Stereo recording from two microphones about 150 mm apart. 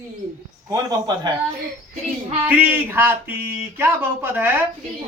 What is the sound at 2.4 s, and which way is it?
Speech, 10° right (ahead or behind).